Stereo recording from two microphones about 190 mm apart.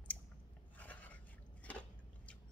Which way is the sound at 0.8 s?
10° left (ahead or behind).